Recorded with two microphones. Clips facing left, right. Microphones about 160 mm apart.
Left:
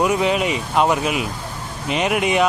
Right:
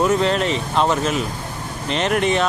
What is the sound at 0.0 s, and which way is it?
Speech, 10° left (ahead or behind).